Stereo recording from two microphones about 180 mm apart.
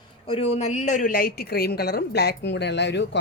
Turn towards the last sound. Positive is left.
turn(degrees=75)  # may be behind; listen again after turning